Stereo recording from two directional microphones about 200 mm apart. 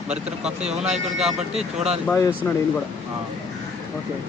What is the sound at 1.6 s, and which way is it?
Speech, 30° right (ahead or behind).